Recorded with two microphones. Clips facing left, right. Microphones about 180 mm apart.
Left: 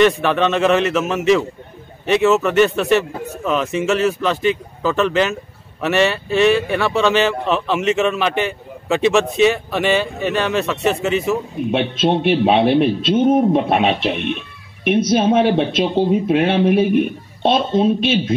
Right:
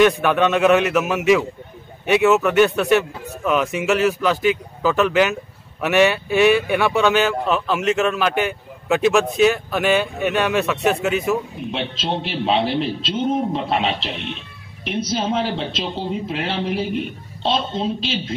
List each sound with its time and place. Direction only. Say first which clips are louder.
0.0 s speech: left 1 dB; 5° right (ahead or behind)
11.7 s a man's voice: left 8 dB; 60° left (ahead or behind)